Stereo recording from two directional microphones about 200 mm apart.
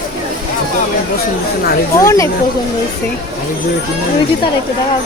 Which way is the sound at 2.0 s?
15° left (ahead or behind).